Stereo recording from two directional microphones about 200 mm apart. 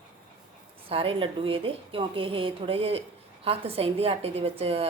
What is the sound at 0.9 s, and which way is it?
A woman's voice, 30° right (ahead or behind).